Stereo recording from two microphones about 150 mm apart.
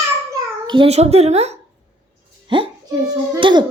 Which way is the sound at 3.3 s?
35° right (ahead or behind).